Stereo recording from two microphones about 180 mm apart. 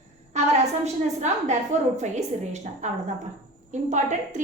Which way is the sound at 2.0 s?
40° right (ahead or behind).